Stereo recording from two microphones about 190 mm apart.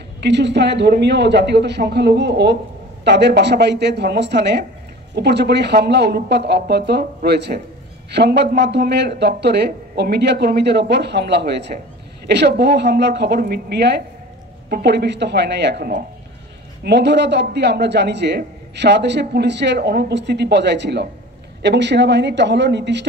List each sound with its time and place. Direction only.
0.2 s a man's voice: 65° right (ahead or behind)